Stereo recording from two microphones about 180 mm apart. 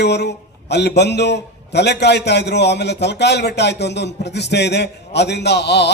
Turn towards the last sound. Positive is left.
turn(degrees=70)  # may be behind; listen again after turning